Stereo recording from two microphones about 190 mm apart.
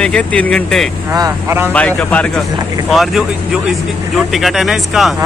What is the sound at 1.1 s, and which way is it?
Speech, 15° right (ahead or behind).